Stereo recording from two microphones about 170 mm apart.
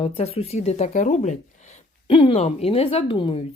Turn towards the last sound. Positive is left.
turn(degrees=30)  # may be behind; listen again after turning